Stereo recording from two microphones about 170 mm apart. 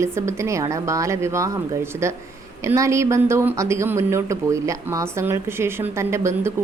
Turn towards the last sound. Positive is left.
turn(degrees=-15)  # may be behind; listen again after turning